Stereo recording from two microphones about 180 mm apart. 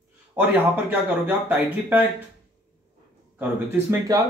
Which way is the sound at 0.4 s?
10° right (ahead or behind).